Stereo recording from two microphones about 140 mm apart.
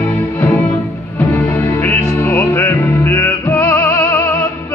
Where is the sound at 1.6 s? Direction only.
15° left (ahead or behind).